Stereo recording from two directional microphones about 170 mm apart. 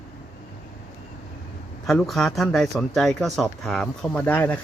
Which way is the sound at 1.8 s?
Centre (ahead or behind).